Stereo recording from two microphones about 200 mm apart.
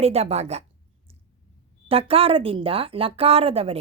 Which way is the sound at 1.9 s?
30° right (ahead or behind).